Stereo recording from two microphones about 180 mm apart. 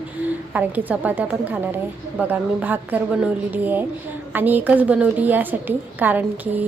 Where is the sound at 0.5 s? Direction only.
10° right (ahead or behind).